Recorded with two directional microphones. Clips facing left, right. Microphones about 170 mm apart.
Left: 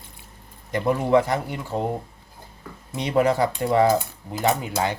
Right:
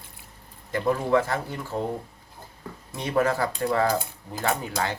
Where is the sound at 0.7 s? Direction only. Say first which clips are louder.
Left 3 dB; 20° left (ahead or behind).